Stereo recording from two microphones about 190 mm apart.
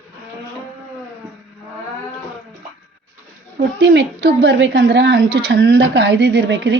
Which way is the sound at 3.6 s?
60° right (ahead or behind).